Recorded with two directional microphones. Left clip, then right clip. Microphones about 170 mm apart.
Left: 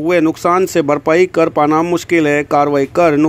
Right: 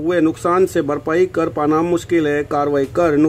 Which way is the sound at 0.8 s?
25° left (ahead or behind).